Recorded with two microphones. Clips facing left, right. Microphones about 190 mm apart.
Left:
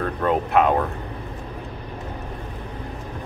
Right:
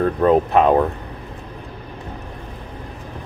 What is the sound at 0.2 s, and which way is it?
Speech, 35° right (ahead or behind).